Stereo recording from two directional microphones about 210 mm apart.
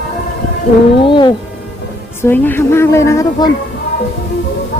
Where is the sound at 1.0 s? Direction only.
20° left (ahead or behind).